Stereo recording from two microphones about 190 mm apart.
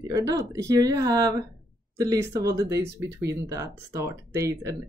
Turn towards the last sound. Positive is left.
turn(degrees=-15)  # may be behind; listen again after turning